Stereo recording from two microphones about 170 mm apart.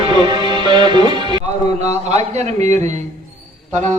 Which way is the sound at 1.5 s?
40° right (ahead or behind).